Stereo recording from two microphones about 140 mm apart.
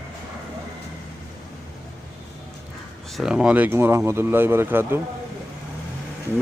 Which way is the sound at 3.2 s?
5° right (ahead or behind).